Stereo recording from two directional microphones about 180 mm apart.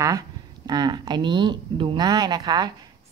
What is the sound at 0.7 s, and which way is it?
A woman's voice, 25° right (ahead or behind).